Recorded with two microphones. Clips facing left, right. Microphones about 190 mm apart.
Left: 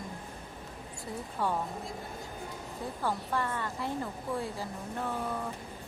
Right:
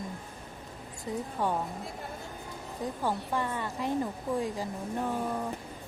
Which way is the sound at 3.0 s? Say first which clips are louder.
Even; 15° right (ahead or behind).